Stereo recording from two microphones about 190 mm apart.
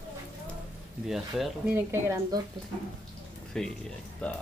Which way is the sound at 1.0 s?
Centre (ahead or behind).